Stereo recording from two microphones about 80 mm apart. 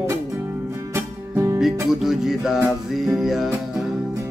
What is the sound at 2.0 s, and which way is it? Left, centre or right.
Music, centre.